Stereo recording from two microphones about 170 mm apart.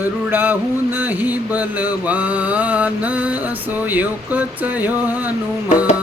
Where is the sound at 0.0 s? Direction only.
10° right (ahead or behind).